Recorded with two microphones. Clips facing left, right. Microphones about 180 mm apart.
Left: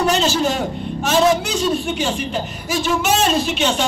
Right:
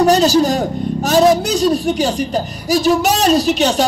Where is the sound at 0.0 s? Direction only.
40° right (ahead or behind).